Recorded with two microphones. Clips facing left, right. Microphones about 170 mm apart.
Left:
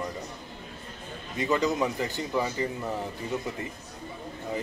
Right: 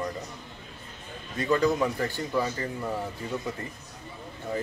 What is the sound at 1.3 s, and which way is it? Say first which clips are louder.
Speech: right 2 dB; 20° left (ahead or behind).